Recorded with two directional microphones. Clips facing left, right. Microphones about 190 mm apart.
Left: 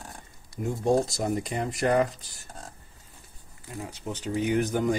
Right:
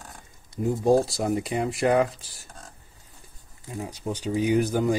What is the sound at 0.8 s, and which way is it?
Speech, 30° right (ahead or behind).